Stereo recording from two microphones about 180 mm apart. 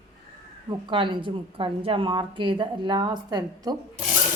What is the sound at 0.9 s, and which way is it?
A woman's voice, 30° right (ahead or behind).